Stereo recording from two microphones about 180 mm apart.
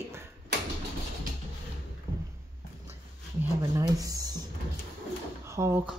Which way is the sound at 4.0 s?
20° right (ahead or behind).